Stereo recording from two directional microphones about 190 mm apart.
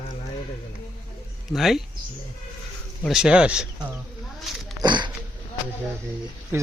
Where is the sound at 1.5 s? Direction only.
Centre (ahead or behind).